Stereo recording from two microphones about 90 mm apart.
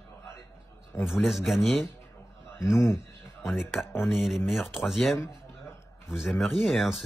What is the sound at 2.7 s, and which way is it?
Speech, 30° left (ahead or behind).